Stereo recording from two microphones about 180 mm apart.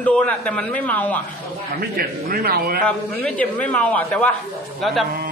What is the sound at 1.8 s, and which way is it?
A man's voice, 60° right (ahead or behind).